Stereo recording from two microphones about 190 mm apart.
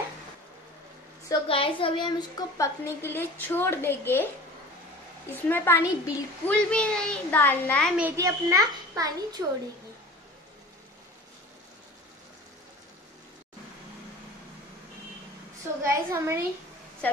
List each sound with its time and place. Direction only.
1.3 s a woman's voice: 30° left (ahead or behind); by 4.3 s 10° left (ahead or behind)
5.3 s a woman's voice: 10° left (ahead or behind)
7.9 s a child's voice: 10° right (ahead or behind)
15.8 s a child's voice: 15° right (ahead or behind)